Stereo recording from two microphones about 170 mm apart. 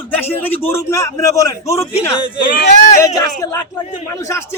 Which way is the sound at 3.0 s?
20° left (ahead or behind).